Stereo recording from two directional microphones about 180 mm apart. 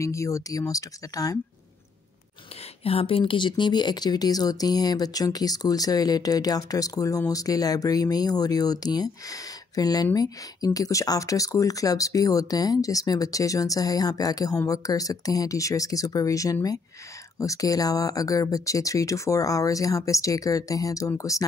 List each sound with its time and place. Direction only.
0.0 s speech: 15° left (ahead or behind)
2.8 s speech: 30° left (ahead or behind)